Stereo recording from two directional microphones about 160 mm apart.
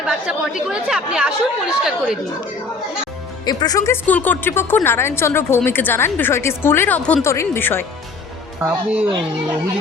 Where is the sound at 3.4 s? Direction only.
25° left (ahead or behind).